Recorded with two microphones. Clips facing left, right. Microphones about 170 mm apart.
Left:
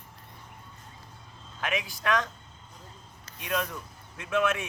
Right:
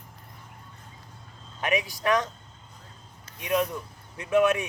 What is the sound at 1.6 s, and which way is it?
Speech, 15° right (ahead or behind).